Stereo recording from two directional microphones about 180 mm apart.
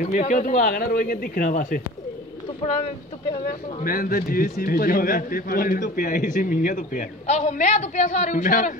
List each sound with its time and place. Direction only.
0.0 s a man's voice: 45° left (ahead or behind)
3.8 s a man's voice: 55° left (ahead or behind)